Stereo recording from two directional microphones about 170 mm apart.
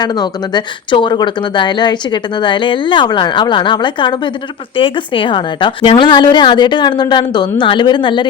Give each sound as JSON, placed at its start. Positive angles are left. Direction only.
{"t": 0.0, "sound": "speech", "side_deg": 25}